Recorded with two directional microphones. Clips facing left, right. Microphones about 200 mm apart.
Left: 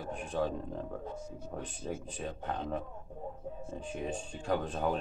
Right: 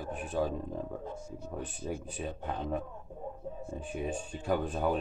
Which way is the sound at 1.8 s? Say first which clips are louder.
Right 1 dB; 5° right (ahead or behind).